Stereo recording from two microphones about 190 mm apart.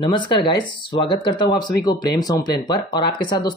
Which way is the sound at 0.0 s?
25° left (ahead or behind).